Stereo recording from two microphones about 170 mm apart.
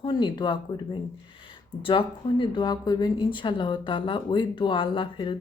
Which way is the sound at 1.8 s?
30° left (ahead or behind).